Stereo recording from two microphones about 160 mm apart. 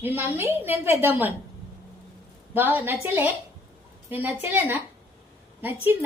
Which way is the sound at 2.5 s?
10° right (ahead or behind).